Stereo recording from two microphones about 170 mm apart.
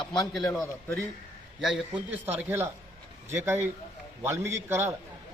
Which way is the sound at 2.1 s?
10° right (ahead or behind).